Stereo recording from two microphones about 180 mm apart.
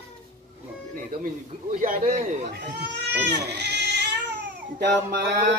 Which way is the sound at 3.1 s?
70° right (ahead or behind).